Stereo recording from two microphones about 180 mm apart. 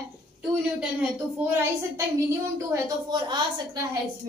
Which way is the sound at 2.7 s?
25° right (ahead or behind).